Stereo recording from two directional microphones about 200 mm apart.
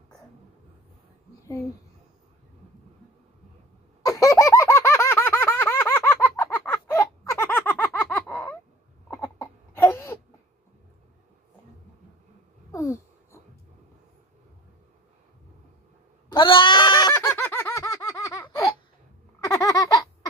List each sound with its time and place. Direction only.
4.0 s baby laughter: 15° left (ahead or behind)
9.0 s crying: 10° left (ahead or behind)
12.7 s wheeze: 15° left (ahead or behind)
16.3 s a sound: 25° left (ahead or behind)